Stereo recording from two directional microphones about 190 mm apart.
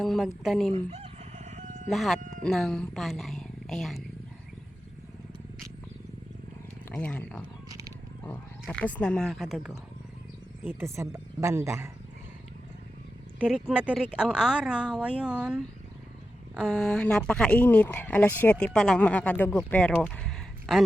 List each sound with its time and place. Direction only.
0.0 s speech: centre (ahead or behind)
0.7 s crowing: 35° right (ahead or behind)
1.9 s speech: centre (ahead or behind)
6.9 s speech: 5° left (ahead or behind)
8.6 s a woman's voice: 5° left (ahead or behind); by 11.9 s 15° right (ahead or behind)
13.4 s speech: 5° right (ahead or behind)